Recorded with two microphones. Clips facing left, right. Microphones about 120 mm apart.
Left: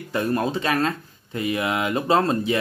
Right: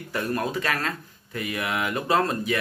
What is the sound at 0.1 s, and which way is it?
Speech, 25° left (ahead or behind).